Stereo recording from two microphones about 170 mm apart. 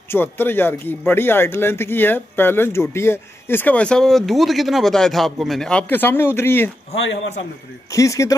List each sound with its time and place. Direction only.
0.1 s speech: 10° left (ahead or behind)
7.9 s speech: 20° left (ahead or behind)